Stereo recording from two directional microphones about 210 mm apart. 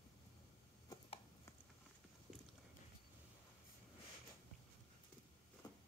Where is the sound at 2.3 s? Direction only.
Centre (ahead or behind).